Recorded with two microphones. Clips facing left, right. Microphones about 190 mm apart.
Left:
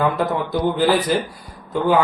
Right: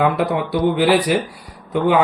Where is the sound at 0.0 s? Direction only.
70° right (ahead or behind).